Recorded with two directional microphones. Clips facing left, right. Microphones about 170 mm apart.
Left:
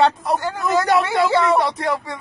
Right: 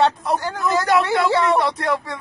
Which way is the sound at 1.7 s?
15° left (ahead or behind).